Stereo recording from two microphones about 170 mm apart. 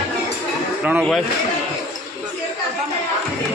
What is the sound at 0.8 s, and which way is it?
Speech, 5° right (ahead or behind).